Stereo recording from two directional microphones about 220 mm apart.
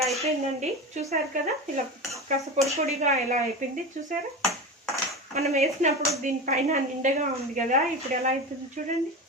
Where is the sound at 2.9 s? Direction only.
30° right (ahead or behind).